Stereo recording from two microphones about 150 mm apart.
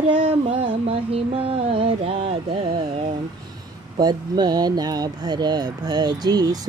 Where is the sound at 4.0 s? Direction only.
30° right (ahead or behind).